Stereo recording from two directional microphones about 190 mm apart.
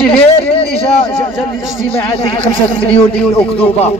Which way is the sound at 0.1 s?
30° left (ahead or behind).